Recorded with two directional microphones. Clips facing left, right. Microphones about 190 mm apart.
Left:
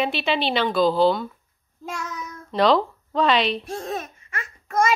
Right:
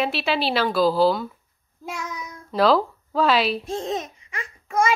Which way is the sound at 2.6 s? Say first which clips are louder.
Even; 5° right (ahead or behind).